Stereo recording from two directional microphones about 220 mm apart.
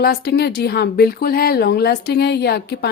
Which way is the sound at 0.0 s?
45° left (ahead or behind).